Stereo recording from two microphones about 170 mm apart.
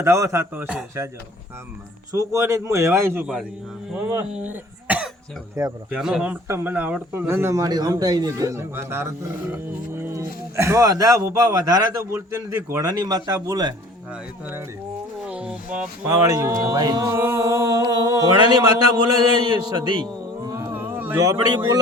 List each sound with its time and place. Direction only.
0.0 s speech: 15° right (ahead or behind)
2.1 s speech: 15° right (ahead or behind)
4.4 s speech: 10° right (ahead or behind)
6.0 s speech: 5° right (ahead or behind); by 13.7 s 20° right (ahead or behind)
14.1 s speech: 10° right (ahead or behind)
15.3 s a sound: 5° right (ahead or behind)
16.0 s speech: 20° right (ahead or behind)
20.4 s a sound: 20° right (ahead or behind)